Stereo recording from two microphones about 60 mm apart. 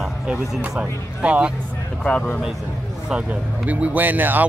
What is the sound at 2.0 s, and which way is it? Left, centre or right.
Speech, centre.